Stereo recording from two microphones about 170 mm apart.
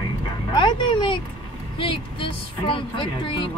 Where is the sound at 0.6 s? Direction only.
25° left (ahead or behind).